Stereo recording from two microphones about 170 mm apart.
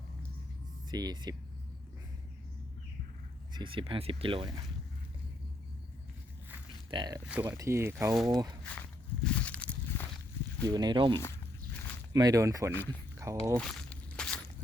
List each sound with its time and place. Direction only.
0.9 s speech: 25° right (ahead or behind)
3.5 s speech: 30° right (ahead or behind)
6.9 s speech: 25° right (ahead or behind)
7.3 s speech: 10° right (ahead or behind)
8.1 s speech: centre (ahead or behind)
9.2 s walk: 5° left (ahead or behind)
10.7 s speech: 25° right (ahead or behind)
12.7 s speech: 10° left (ahead or behind)
13.3 s speech: 20° right (ahead or behind)
13.6 s walk: 5° left (ahead or behind)